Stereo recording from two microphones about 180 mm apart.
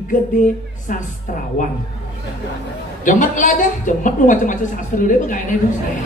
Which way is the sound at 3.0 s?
45° left (ahead or behind).